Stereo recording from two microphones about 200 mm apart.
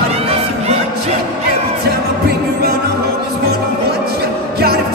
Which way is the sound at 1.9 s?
50° right (ahead or behind).